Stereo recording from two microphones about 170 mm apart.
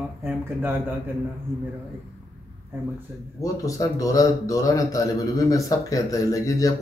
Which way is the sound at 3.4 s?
20° left (ahead or behind).